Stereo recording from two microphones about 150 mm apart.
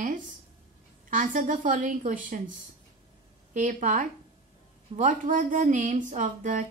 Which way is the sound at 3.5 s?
55° right (ahead or behind).